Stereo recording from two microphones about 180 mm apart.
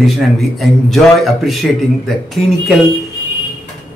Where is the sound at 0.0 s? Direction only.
Centre (ahead or behind).